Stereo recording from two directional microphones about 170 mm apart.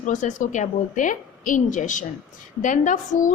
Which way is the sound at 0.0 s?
45° left (ahead or behind).